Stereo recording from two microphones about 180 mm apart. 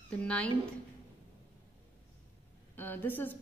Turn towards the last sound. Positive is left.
turn(degrees=10)  # may be behind; listen again after turning